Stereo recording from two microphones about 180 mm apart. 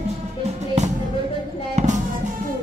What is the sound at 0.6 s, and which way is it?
Music, 40° right (ahead or behind).